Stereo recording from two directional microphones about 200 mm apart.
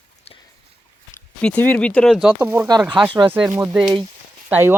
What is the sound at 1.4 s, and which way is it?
Speech, 5° left (ahead or behind).